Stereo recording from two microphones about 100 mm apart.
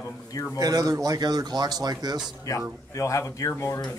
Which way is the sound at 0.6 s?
35° right (ahead or behind).